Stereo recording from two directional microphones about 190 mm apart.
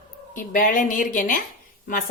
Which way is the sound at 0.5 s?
45° left (ahead or behind).